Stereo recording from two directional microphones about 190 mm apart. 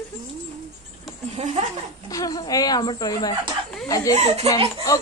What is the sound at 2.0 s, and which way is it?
Speech, 20° left (ahead or behind).